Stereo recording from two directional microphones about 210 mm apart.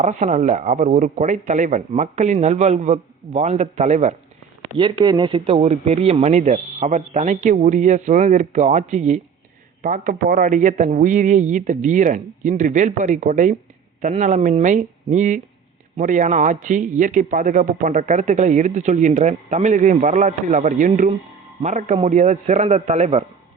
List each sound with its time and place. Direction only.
0.0 s speech: 35° right (ahead or behind)
4.8 s speech: 25° right (ahead or behind)